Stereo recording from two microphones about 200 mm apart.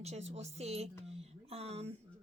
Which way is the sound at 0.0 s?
35° right (ahead or behind).